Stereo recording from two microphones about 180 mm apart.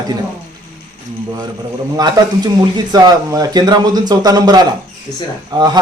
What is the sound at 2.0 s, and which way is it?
Speech, 20° right (ahead or behind).